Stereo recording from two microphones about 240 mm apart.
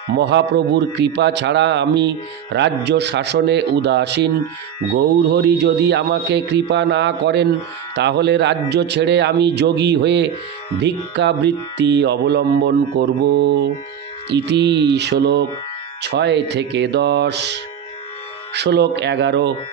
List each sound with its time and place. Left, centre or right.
0.2 s music: right